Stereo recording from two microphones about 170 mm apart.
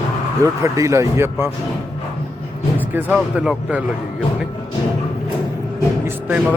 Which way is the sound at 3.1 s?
5° right (ahead or behind).